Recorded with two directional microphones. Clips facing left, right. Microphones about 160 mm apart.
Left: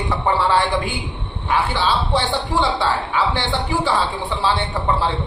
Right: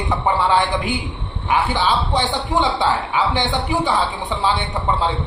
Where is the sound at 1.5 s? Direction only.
20° right (ahead or behind).